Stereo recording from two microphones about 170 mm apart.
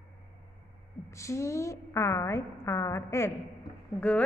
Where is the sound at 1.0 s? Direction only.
15° left (ahead or behind).